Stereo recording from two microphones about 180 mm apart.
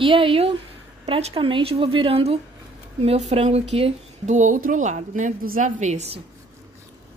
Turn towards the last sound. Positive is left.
turn(degrees=-35)  # may be behind; listen again after turning